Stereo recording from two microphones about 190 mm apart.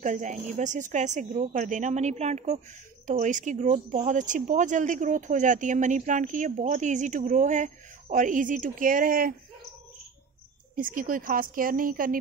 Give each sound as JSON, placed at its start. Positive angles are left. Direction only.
{"t": 0.0, "sound": "speech", "side_deg": -40}
{"t": 10.8, "sound": "a woman's voice", "side_deg": -45}